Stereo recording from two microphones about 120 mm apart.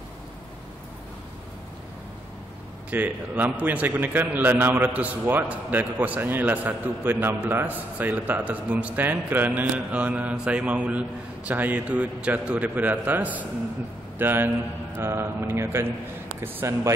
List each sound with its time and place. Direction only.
2.9 s a man's voice: 15° right (ahead or behind)
15.0 s mantra: 20° right (ahead or behind)